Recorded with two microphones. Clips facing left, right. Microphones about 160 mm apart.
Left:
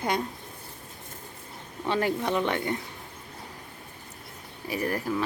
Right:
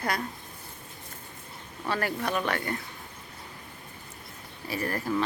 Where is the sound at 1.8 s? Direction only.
20° left (ahead or behind).